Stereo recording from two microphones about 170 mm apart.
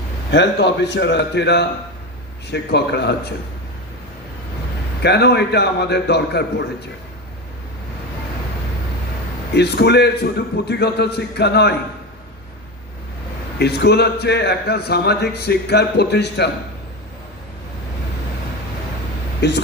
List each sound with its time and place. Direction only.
0.3 s a man's voice: 90° left
2.5 s a man's voice: 75° left (ahead or behind)
5.0 s a man's voice: 80° left
9.6 s a man's voice: 75° left (ahead or behind)
13.6 s a man's voice: 75° left (ahead or behind)
19.4 s speech: 90° left